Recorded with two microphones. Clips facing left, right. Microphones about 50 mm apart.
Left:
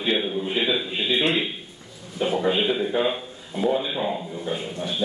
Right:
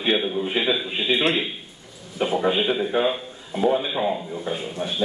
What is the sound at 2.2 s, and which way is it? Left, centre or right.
Speech, right.